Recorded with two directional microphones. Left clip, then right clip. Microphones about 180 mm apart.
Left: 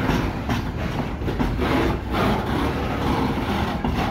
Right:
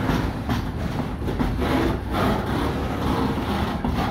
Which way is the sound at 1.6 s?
50° left (ahead or behind).